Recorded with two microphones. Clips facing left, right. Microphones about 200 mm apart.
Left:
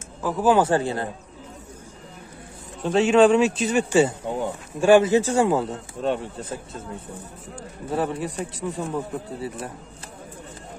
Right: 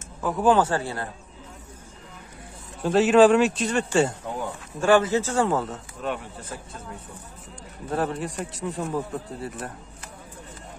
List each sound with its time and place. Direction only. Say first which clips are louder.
0.2 s speech: left 1 dB; 5° left (ahead or behind)
0.6 s speech: left 3 dB; 20° left (ahead or behind)
2.8 s speech: even; centre (ahead or behind)
6.0 s speech: left 5 dB; 25° left (ahead or behind)
7.9 s speech: left 1 dB; centre (ahead or behind)